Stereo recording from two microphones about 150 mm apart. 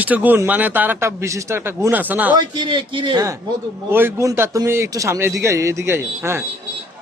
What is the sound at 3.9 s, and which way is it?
A man's voice, 15° right (ahead or behind).